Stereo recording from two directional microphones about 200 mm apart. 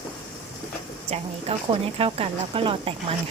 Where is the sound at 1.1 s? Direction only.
30° right (ahead or behind).